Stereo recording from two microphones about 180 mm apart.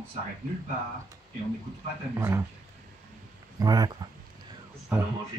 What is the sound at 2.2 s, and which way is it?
Speech, 15° right (ahead or behind).